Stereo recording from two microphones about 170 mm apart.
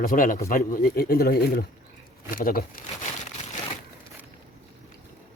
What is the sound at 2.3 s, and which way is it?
Speech, 55° left (ahead or behind).